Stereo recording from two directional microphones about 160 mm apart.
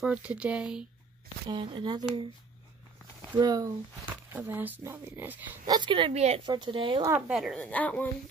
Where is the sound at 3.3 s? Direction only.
25° right (ahead or behind).